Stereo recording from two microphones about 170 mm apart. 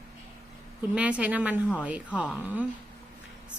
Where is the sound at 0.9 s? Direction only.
10° right (ahead or behind).